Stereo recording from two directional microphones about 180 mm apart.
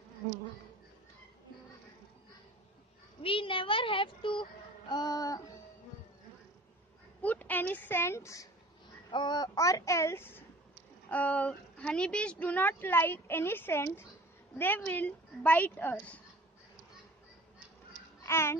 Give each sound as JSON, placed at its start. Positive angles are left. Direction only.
{"t": 3.2, "sound": "speech", "side_deg": 30}
{"t": 7.2, "sound": "a woman's voice", "side_deg": 10}
{"t": 18.2, "sound": "a child's voice", "side_deg": 15}